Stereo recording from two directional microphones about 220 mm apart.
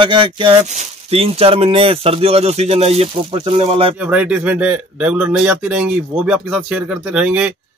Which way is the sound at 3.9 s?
5° right (ahead or behind).